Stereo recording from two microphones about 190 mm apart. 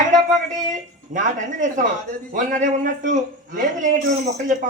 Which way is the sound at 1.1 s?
45° right (ahead or behind).